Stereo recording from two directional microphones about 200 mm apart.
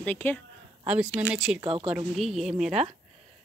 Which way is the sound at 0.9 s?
5° right (ahead or behind).